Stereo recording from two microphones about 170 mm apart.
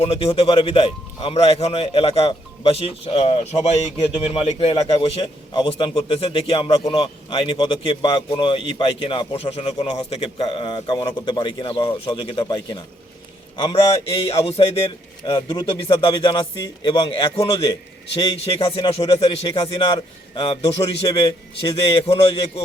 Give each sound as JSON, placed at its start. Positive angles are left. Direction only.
{"t": 0.0, "sound": "a man's voice", "side_deg": 35}
{"t": 3.9, "sound": "a man's voice", "side_deg": 25}
{"t": 4.4, "sound": "a man's voice", "side_deg": 35}
{"t": 21.1, "sound": "a man's voice", "side_deg": 20}